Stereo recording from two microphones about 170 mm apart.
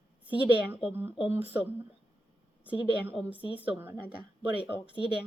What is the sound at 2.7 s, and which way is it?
A woman's voice, 10° right (ahead or behind).